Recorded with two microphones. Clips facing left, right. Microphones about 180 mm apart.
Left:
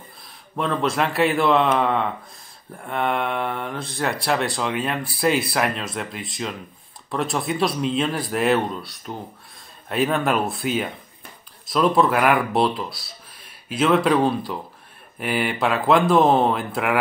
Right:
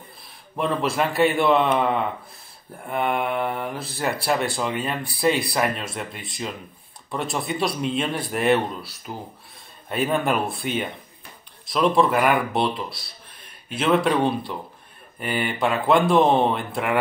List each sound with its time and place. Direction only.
0.6 s speech: centre (ahead or behind)